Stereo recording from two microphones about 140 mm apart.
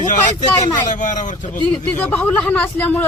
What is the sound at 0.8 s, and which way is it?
Speech, 60° left (ahead or behind).